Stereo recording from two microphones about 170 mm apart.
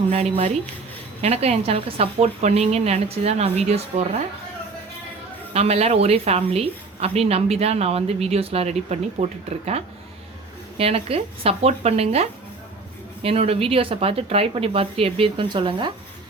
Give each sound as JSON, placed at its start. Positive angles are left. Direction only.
{"t": 0.1, "sound": "a woman's voice", "side_deg": -35}
{"t": 5.5, "sound": "a woman's voice", "side_deg": -40}